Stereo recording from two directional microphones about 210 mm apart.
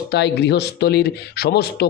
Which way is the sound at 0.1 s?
55° left (ahead or behind).